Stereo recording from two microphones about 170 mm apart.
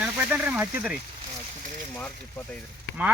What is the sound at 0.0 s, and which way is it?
Speech, 10° right (ahead or behind).